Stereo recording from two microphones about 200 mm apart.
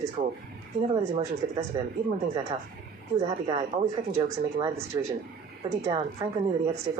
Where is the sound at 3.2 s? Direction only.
25° right (ahead or behind).